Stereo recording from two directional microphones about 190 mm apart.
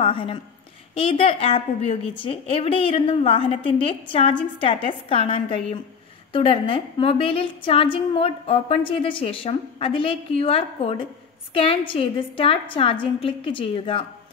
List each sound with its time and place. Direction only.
0.0 s a woman's voice: 30° left (ahead or behind)